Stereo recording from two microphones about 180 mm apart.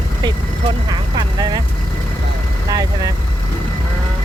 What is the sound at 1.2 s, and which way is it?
Vehicle, 20° right (ahead or behind).